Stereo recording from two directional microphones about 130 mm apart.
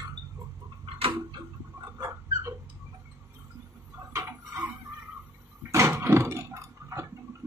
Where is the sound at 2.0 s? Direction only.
20° right (ahead or behind).